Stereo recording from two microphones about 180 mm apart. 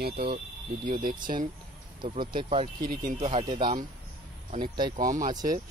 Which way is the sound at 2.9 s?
55° right (ahead or behind).